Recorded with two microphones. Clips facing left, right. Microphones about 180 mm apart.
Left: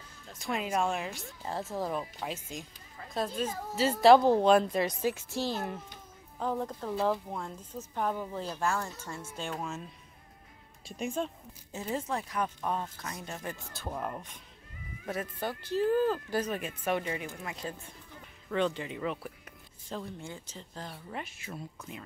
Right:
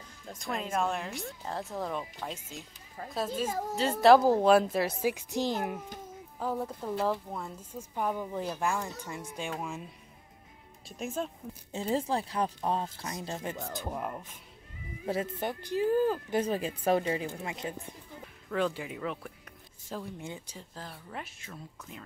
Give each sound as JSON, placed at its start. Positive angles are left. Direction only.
{"t": 0.3, "sound": "a woman's voice", "side_deg": 0}
{"t": 10.9, "sound": "a woman's voice", "side_deg": 0}
{"t": 11.7, "sound": "speech", "side_deg": -30}
{"t": 13.7, "sound": "a woman's voice", "side_deg": -10}
{"t": 15.0, "sound": "speech", "side_deg": -25}
{"t": 15.6, "sound": "a woman's voice", "side_deg": -15}
{"t": 16.3, "sound": "speech", "side_deg": -30}
{"t": 18.5, "sound": "a woman's voice", "side_deg": -5}